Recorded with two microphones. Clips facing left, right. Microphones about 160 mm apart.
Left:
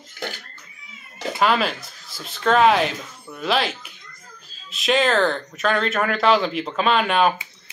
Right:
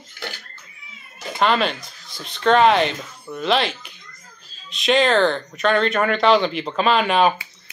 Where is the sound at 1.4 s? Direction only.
5° left (ahead or behind).